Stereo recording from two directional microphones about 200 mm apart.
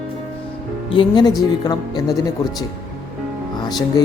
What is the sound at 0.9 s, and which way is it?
Speech, 20° left (ahead or behind).